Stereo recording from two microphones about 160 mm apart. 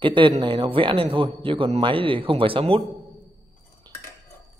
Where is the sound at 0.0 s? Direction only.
30° right (ahead or behind).